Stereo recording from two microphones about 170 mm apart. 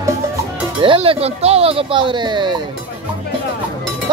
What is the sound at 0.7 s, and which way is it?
Speech, 30° right (ahead or behind).